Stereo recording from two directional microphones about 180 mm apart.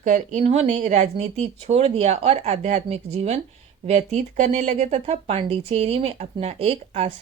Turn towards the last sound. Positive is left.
turn(degrees=-35)  # may be behind; listen again after turning